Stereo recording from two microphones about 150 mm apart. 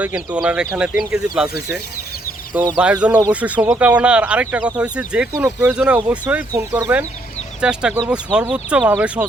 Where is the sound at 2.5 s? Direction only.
10° right (ahead or behind).